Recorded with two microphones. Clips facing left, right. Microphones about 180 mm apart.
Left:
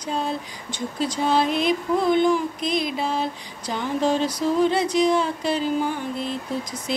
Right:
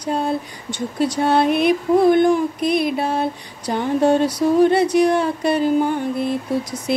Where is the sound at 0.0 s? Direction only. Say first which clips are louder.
Right 5 dB; 60° right (ahead or behind).